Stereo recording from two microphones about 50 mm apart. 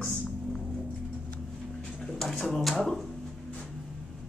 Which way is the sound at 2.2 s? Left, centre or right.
Centre.